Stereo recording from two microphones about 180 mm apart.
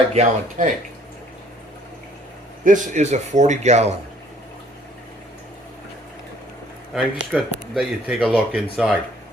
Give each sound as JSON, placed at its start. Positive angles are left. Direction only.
{"t": 0.1, "sound": "a man's voice", "side_deg": -40}
{"t": 2.6, "sound": "a man's voice", "side_deg": -45}
{"t": 6.9, "sound": "speech", "side_deg": 0}